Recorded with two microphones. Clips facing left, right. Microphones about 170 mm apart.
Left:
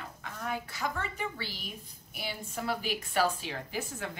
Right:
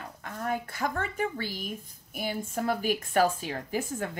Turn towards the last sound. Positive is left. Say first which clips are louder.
# right 5 dB
turn(degrees=-45)  # may be behind; listen again after turning